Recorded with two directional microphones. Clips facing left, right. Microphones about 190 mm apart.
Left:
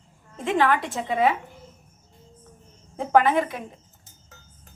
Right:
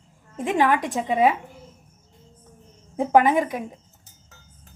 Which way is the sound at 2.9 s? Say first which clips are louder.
Right 2 dB; 15° right (ahead or behind).